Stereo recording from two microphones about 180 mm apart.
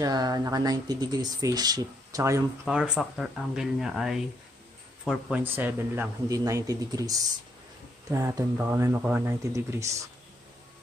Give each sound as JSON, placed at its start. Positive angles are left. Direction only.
{"t": 0.0, "sound": "speech", "side_deg": -20}
{"t": 2.6, "sound": "speech", "side_deg": -5}